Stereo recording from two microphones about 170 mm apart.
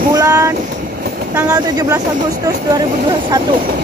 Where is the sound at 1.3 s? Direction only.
20° right (ahead or behind).